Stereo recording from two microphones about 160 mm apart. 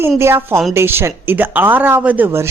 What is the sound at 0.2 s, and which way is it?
A woman's voice, 15° right (ahead or behind).